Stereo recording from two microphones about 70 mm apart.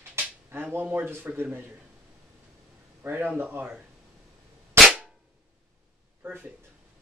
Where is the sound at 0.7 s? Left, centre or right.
Right.